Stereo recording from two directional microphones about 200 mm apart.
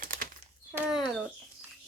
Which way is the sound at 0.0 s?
45° right (ahead or behind).